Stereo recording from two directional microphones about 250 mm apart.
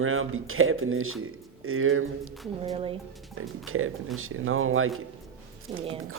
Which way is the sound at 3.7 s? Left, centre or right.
Right.